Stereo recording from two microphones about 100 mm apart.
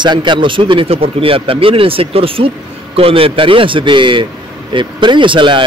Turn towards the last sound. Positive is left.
turn(degrees=-55)  # may be behind; listen again after turning